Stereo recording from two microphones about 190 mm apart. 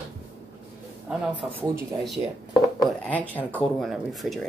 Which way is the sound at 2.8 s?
10° left (ahead or behind).